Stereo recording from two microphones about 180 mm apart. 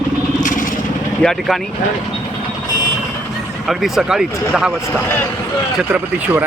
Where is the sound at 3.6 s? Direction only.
Centre (ahead or behind).